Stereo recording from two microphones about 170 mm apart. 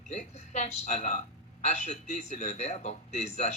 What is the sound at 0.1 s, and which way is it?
Speech, 45° left (ahead or behind).